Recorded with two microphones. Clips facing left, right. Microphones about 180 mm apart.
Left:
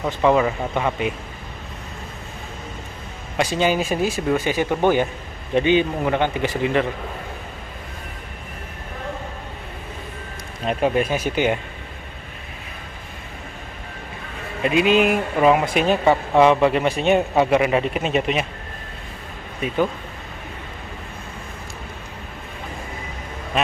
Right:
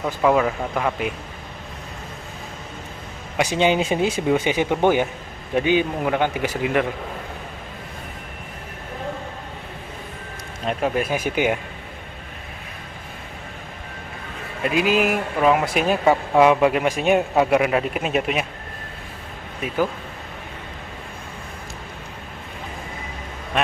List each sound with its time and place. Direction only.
0.0 s speech: centre (ahead or behind)
3.3 s speech: 15° right (ahead or behind)
10.7 s speech: centre (ahead or behind)
14.6 s speech: 5° right (ahead or behind)
19.6 s speech: 5° right (ahead or behind)